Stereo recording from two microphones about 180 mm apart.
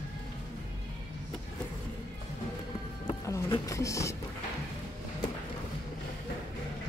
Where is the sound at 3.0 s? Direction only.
15° left (ahead or behind).